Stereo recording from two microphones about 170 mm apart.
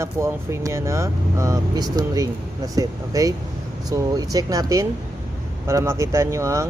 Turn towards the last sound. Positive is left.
turn(degrees=-15)  # may be behind; listen again after turning